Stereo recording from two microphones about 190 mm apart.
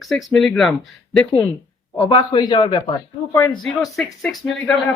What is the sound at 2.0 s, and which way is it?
Speech, 25° left (ahead or behind).